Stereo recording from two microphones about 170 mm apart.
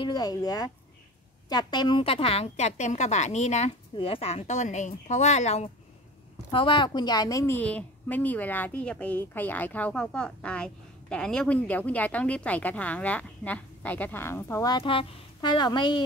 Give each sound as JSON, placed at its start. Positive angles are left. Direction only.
{"t": 0.0, "sound": "a woman's voice", "side_deg": 25}
{"t": 6.5, "sound": "a woman's voice", "side_deg": 30}
{"t": 14.8, "sound": "speech", "side_deg": 30}